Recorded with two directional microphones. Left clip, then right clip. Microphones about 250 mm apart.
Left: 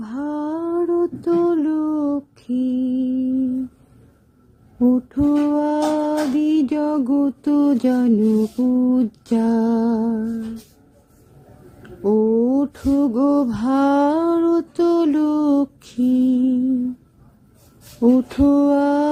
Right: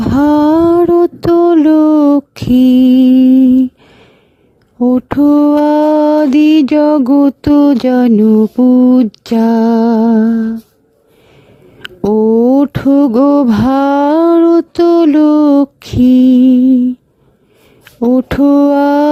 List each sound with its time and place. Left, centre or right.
0.1 s a sound: right
4.9 s mantra: right
11.8 s mantra: right
18.1 s mantra: right